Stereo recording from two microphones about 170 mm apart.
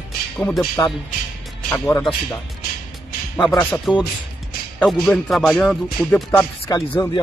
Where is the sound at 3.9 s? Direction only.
5° right (ahead or behind); by 7.2 s 25° left (ahead or behind).